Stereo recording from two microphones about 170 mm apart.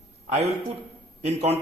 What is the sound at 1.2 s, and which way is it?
Speech, 40° right (ahead or behind).